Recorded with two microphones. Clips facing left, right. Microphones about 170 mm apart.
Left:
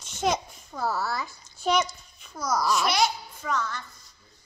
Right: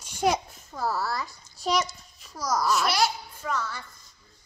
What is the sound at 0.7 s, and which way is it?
A child's voice, centre (ahead or behind).